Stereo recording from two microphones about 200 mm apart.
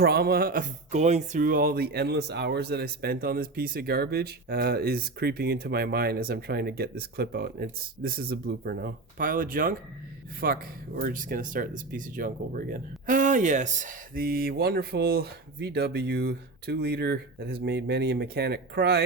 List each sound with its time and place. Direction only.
0.0 s speech: 50° right (ahead or behind)